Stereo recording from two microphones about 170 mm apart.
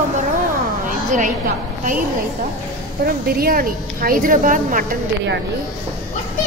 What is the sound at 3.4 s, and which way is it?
Speech, 60° right (ahead or behind).